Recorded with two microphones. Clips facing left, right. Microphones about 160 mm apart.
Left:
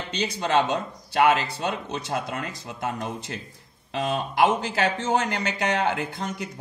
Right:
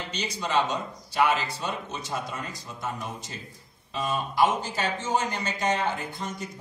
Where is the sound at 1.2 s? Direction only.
85° left.